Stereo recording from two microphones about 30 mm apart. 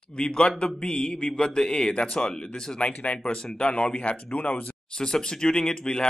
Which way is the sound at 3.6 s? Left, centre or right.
Left.